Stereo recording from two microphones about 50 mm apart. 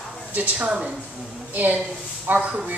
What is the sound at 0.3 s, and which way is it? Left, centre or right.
A woman's voice, right.